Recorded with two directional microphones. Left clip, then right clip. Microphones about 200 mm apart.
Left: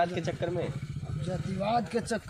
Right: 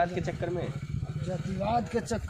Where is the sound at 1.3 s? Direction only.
5° right (ahead or behind).